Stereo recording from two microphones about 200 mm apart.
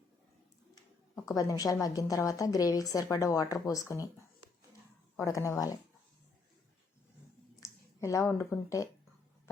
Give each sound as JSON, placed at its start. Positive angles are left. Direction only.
{"t": 1.2, "sound": "a woman's voice", "side_deg": 15}
{"t": 5.1, "sound": "a woman's voice", "side_deg": 15}
{"t": 7.6, "sound": "speech", "side_deg": 15}